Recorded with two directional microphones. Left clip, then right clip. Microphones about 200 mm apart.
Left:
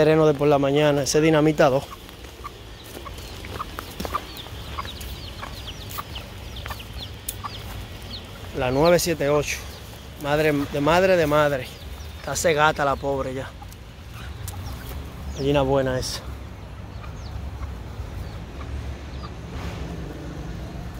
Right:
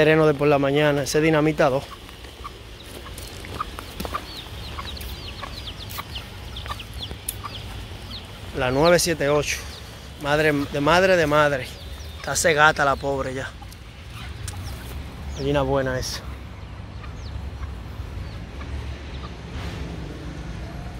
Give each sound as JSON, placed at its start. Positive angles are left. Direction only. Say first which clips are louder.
{"t": 0.0, "sound": "speech", "louder": "even", "side_deg": 0}
{"t": 8.5, "sound": "speech", "louder": "right 1 dB", "side_deg": 0}
{"t": 15.4, "sound": "speech", "louder": "left 1 dB", "side_deg": 20}